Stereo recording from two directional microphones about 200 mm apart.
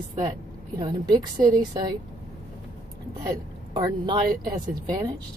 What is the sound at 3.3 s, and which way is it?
Speech, 20° right (ahead or behind).